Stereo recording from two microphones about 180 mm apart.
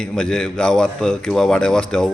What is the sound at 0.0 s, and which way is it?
A man's voice, 5° left (ahead or behind).